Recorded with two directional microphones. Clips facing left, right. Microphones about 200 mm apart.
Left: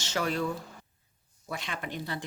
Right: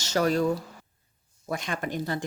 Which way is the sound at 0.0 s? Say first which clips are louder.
Right 6 dB; 40° right (ahead or behind).